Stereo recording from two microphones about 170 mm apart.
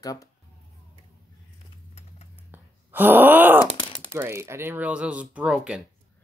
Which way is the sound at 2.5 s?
10° right (ahead or behind).